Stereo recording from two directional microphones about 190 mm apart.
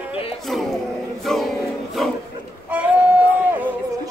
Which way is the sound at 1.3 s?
Centre (ahead or behind).